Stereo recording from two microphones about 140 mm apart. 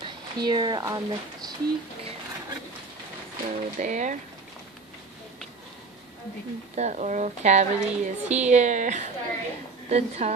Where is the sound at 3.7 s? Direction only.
60° right (ahead or behind).